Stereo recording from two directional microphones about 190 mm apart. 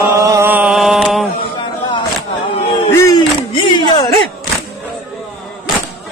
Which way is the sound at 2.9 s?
15° left (ahead or behind).